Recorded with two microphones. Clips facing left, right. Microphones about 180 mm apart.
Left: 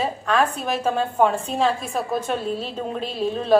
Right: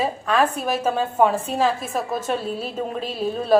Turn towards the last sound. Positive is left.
turn(degrees=-5)  # may be behind; listen again after turning